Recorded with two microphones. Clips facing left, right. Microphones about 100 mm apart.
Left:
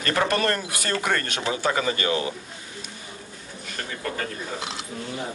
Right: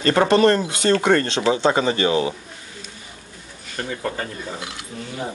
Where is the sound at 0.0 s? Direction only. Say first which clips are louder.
Right 8 dB; 30° right (ahead or behind).